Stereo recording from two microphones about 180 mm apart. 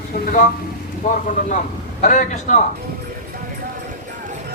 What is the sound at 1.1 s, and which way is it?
A man's voice, 45° left (ahead or behind).